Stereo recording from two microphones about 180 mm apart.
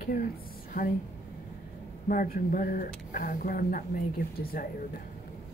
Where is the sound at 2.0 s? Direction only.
50° left (ahead or behind).